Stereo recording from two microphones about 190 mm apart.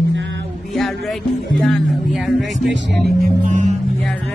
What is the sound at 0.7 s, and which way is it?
Speech, centre (ahead or behind).